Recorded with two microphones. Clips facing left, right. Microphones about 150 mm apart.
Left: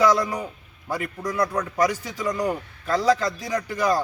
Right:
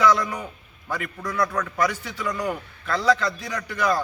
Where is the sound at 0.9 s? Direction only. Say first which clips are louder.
Left 2 dB; 35° left (ahead or behind).